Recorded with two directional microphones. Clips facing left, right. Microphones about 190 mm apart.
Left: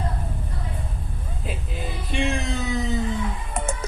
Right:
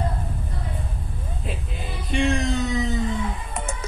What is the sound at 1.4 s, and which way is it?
Music, centre (ahead or behind).